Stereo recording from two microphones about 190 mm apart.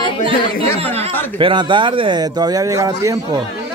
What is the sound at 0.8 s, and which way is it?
Speech, 30° right (ahead or behind).